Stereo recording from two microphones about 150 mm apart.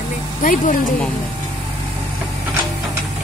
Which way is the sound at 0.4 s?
65° left (ahead or behind).